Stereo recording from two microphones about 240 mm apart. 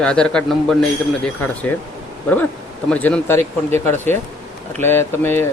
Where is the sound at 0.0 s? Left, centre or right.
Centre.